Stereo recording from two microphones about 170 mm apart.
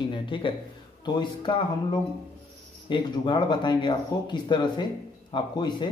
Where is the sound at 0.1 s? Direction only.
30° left (ahead or behind).